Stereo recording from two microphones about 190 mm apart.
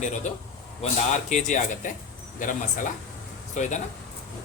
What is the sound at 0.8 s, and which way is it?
Speech, 40° left (ahead or behind).